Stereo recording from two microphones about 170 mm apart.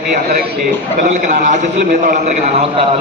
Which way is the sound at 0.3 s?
65° right (ahead or behind).